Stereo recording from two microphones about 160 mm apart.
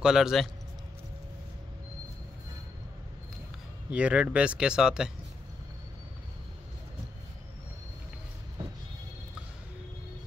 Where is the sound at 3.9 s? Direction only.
5° right (ahead or behind).